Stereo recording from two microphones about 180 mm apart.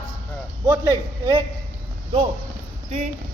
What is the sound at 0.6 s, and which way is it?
Speech, 20° right (ahead or behind).